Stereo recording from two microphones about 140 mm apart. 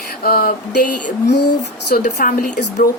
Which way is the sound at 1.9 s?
85° left.